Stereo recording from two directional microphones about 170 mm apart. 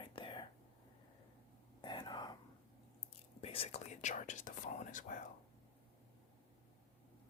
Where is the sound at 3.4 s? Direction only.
35° left (ahead or behind).